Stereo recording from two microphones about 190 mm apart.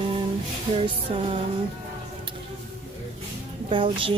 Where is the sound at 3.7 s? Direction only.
25° right (ahead or behind).